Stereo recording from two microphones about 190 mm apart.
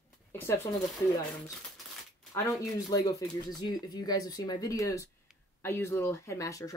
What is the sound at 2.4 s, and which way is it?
Speech, 20° left (ahead or behind).